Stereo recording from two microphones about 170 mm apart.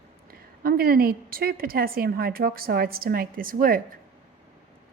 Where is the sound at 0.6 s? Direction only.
60° right (ahead or behind).